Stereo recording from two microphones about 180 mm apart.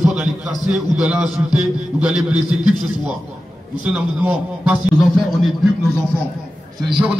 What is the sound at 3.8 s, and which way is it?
Speech, 10° right (ahead or behind).